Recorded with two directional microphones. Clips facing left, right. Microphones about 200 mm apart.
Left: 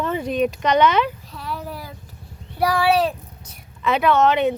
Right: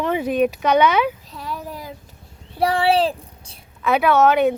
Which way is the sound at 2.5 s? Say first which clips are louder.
Right 1 dB; 30° right (ahead or behind).